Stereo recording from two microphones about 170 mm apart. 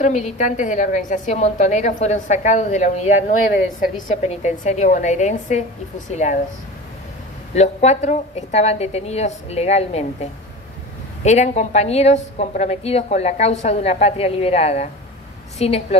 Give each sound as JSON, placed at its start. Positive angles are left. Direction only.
{"t": 0.0, "sound": "a woman's voice", "side_deg": 45}
{"t": 7.5, "sound": "a woman's voice", "side_deg": 40}
{"t": 11.2, "sound": "a woman's voice", "side_deg": 40}